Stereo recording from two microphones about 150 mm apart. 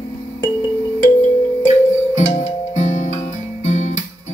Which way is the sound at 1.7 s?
50° left (ahead or behind).